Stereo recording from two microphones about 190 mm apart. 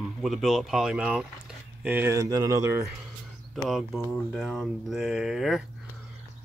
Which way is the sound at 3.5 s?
Centre (ahead or behind).